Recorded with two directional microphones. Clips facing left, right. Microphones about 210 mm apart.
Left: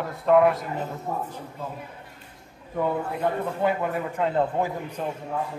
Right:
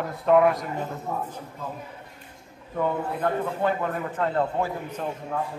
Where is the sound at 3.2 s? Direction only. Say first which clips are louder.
Even; 10° left (ahead or behind).